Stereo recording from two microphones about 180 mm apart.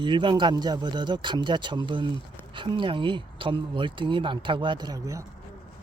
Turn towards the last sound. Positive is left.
turn(degrees=-20)  # may be behind; listen again after turning